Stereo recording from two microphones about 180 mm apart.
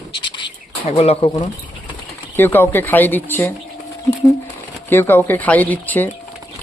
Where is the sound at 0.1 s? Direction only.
25° left (ahead or behind).